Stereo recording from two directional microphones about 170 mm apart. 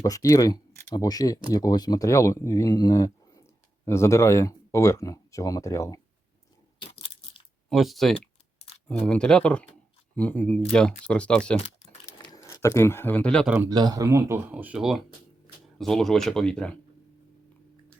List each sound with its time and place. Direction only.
0.0 s speech: 20° left (ahead or behind)
7.7 s speech: centre (ahead or behind)
12.2 s speech: 20° left (ahead or behind); by 13.5 s 5° left (ahead or behind)
13.7 s speech: 25° right (ahead or behind); by 16.7 s 5° left (ahead or behind)